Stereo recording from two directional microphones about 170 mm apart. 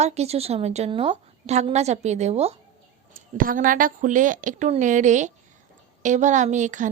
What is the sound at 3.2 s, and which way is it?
A woman's voice, 55° right (ahead or behind).